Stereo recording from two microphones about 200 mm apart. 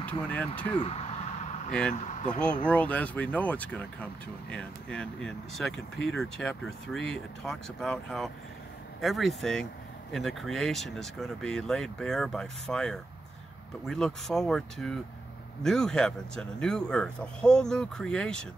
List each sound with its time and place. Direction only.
0.0 s speech: 5° left (ahead or behind)
0.8 s a sound: 30° left (ahead or behind)
1.7 s speech: 5° left (ahead or behind)